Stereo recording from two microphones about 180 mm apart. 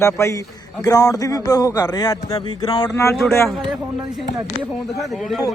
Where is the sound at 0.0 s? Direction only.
15° left (ahead or behind).